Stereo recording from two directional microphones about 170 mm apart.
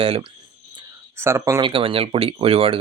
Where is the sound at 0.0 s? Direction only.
30° right (ahead or behind).